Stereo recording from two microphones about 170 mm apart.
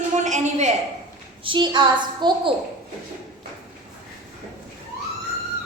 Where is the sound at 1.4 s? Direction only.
30° right (ahead or behind).